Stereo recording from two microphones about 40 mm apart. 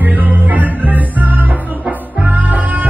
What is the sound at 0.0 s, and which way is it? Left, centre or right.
Music, right.